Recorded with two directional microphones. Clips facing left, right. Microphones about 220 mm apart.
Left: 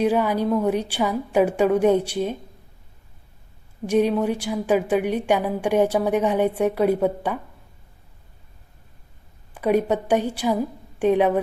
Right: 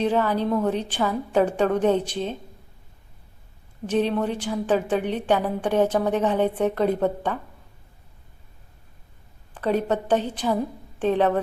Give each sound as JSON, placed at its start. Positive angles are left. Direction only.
{"t": 0.0, "sound": "a woman's voice", "side_deg": 10}
{"t": 3.8, "sound": "a woman's voice", "side_deg": 10}
{"t": 9.6, "sound": "a woman's voice", "side_deg": 10}